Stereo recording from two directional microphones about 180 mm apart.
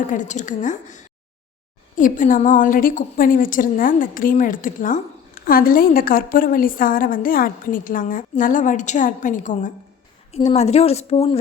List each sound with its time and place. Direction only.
0.1 s a woman's voice: 45° left (ahead or behind)